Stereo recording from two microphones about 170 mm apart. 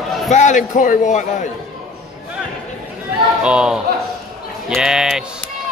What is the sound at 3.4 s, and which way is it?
Speech, 5° right (ahead or behind).